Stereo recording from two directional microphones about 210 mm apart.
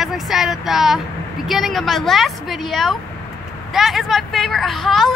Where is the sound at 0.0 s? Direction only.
Centre (ahead or behind).